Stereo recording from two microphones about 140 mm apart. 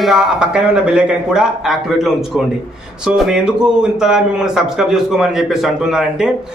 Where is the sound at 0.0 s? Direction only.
5° right (ahead or behind).